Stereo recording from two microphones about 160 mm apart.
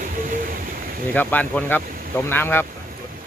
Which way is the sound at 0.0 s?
55° right (ahead or behind).